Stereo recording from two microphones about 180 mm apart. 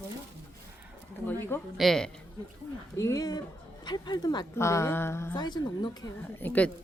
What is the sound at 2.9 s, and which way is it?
A woman's voice, 20° left (ahead or behind).